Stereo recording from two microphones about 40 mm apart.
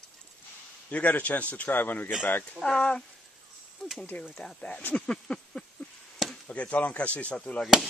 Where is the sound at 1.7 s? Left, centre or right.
Left.